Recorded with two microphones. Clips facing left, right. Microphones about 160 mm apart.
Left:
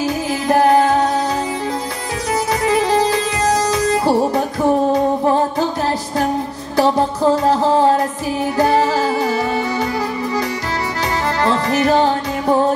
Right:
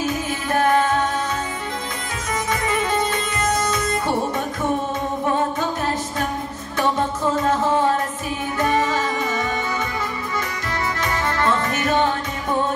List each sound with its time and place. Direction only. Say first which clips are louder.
0.0 s music: left 5 dB; 35° left (ahead or behind)
2.6 s music: left 8 dB; 35° left (ahead or behind)
6.8 s music: left 6 dB; 35° left (ahead or behind)
11.0 s music: left 5 dB; 35° left (ahead or behind)